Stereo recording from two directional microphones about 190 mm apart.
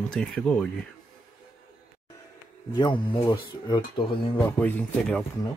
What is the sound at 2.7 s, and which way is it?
Speech, 25° left (ahead or behind).